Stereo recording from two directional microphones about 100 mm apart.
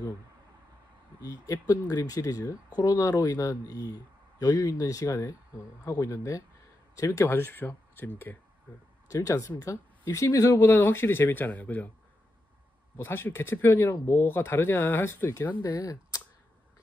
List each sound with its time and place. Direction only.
1.2 s speech: 35° left (ahead or behind); by 8.1 s 20° left (ahead or behind)
9.1 s speech: 35° left (ahead or behind)
10.5 s speech: 20° left (ahead or behind)
12.9 s speech: 25° left (ahead or behind)
15.6 s speech: 35° left (ahead or behind)